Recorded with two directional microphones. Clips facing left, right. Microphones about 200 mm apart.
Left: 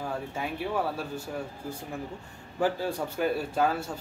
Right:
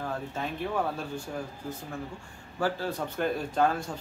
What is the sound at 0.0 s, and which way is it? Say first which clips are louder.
Speech: even; 10° left (ahead or behind).